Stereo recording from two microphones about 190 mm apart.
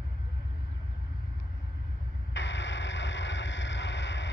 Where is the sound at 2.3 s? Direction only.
70° left (ahead or behind).